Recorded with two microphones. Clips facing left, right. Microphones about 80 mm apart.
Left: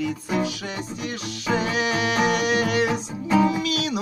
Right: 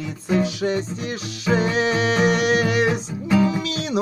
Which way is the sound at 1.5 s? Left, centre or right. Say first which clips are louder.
Right 3 dB; right.